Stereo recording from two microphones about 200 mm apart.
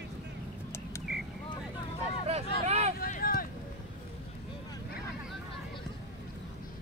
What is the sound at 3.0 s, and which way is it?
Vehicle, 45° left (ahead or behind).